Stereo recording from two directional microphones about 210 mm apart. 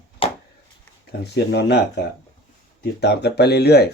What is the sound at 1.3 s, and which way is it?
Speech, 55° left (ahead or behind).